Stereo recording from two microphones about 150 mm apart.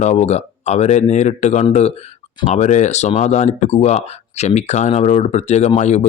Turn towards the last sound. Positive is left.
turn(degrees=50)  # may be behind; listen again after turning